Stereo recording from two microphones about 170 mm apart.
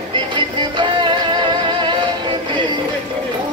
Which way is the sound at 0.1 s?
30° right (ahead or behind).